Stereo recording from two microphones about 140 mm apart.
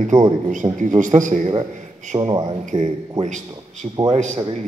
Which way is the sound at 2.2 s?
35° right (ahead or behind).